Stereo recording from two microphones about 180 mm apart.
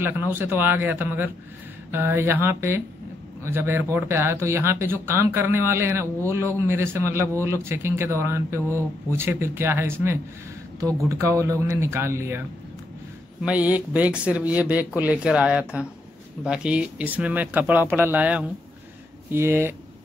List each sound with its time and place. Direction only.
0.0 s speech: 10° right (ahead or behind)